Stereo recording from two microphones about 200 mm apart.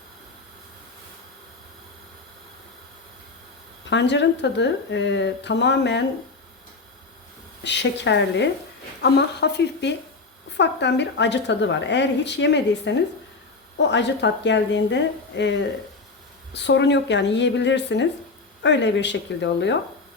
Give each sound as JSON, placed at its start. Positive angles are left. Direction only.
{"t": 3.8, "sound": "a woman's voice", "side_deg": 60}
{"t": 7.6, "sound": "a woman's voice", "side_deg": 60}